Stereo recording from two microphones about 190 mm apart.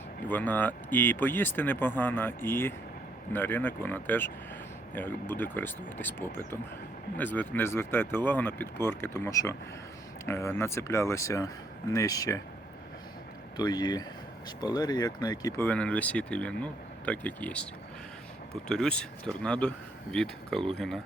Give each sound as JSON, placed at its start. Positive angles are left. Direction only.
{"t": 0.3, "sound": "speech", "side_deg": 10}
{"t": 13.6, "sound": "speech", "side_deg": 20}
{"t": 18.7, "sound": "speech", "side_deg": 5}